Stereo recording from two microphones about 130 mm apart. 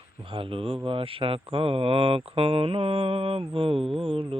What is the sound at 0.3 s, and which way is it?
Speech, 45° right (ahead or behind).